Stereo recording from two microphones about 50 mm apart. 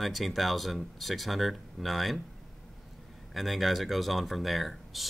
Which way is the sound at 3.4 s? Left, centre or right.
Centre.